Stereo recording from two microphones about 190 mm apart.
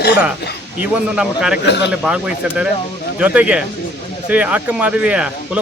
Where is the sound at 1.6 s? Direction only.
65° left (ahead or behind).